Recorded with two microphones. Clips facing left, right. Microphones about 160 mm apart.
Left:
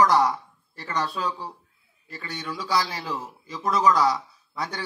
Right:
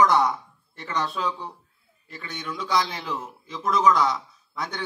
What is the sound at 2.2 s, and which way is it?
Speech, 30° left (ahead or behind).